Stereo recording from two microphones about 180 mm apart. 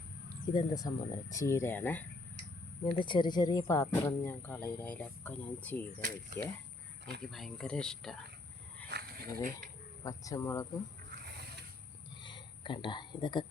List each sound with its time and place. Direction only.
0.5 s speech: 20° left (ahead or behind)
2.8 s speech: 25° left (ahead or behind); by 5.8 s 10° left (ahead or behind)
6.0 s speech: 50° right (ahead or behind)
7.3 s speech: centre (ahead or behind)
8.9 s speech: 60° right (ahead or behind)
10.0 s speech: 20° left (ahead or behind)
12.2 s a sound: 25° left (ahead or behind)